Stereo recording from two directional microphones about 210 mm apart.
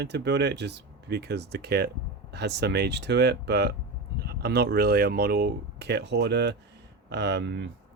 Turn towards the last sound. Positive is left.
turn(degrees=-55)  # may be behind; listen again after turning